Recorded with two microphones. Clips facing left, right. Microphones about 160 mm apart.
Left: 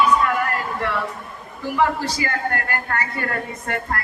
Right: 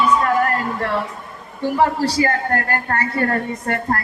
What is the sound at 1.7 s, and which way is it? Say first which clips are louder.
A woman's voice: right 3 dB; 40° right (ahead or behind).